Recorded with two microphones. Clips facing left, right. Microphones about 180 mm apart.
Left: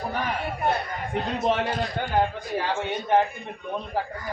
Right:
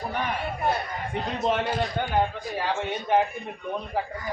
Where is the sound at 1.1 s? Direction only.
Centre (ahead or behind).